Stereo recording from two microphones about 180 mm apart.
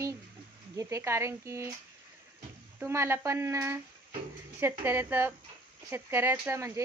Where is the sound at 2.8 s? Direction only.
15° right (ahead or behind).